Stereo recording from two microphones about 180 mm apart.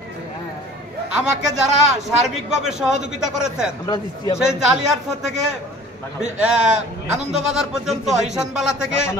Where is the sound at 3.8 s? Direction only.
20° left (ahead or behind).